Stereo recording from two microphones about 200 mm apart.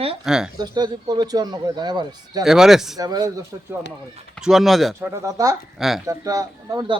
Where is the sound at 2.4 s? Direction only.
Centre (ahead or behind).